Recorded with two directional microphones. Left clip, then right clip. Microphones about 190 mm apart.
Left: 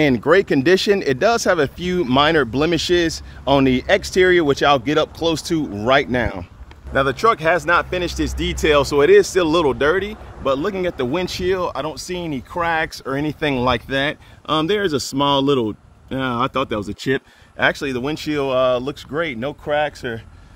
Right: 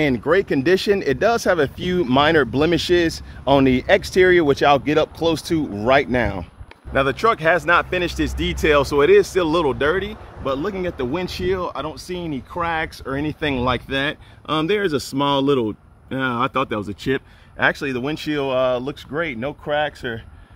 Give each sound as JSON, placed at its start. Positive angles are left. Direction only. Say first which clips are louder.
{"t": 0.0, "sound": "speech", "louder": "left 3 dB", "side_deg": 35}